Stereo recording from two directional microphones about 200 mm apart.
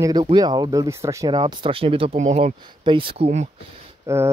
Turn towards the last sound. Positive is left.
turn(degrees=-15)  # may be behind; listen again after turning